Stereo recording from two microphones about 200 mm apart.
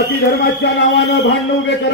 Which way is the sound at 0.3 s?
60° left (ahead or behind).